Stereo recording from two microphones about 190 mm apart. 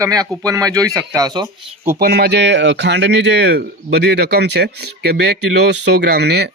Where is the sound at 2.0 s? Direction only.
55° right (ahead or behind).